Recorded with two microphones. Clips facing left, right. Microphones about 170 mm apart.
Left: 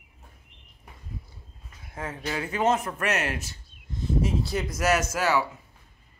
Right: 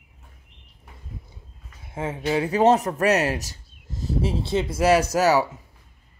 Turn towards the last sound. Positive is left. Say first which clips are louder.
# right 6 dB
turn(degrees=-40)  # may be behind; listen again after turning